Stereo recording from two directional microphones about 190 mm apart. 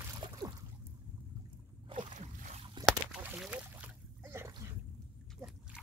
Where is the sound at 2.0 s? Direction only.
40° right (ahead or behind).